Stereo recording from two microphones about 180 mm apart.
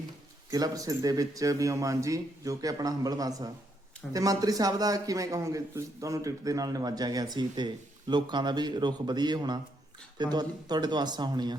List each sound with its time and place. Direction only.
0.5 s a man's voice: 20° right (ahead or behind)